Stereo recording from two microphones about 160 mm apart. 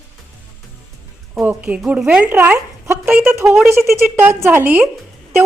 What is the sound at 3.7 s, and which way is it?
Speech, 15° right (ahead or behind).